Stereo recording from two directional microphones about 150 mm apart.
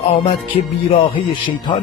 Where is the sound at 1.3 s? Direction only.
30° left (ahead or behind).